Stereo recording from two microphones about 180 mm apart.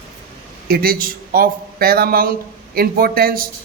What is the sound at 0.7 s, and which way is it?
A man's voice, 55° right (ahead or behind).